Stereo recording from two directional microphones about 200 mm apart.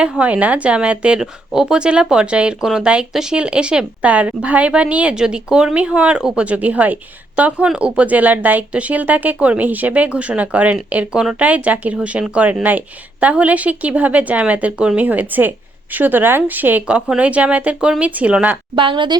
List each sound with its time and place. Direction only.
0.0 s a woman's voice: 5° right (ahead or behind)
18.8 s a woman's voice: 25° right (ahead or behind)